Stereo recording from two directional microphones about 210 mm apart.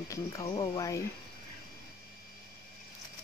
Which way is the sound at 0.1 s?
15° left (ahead or behind).